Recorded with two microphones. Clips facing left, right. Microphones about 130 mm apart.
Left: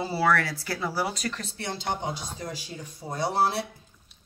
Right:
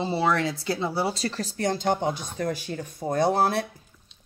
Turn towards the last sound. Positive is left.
turn(degrees=-50)  # may be behind; listen again after turning